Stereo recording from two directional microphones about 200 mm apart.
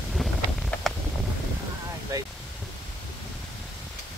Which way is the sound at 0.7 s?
5° left (ahead or behind).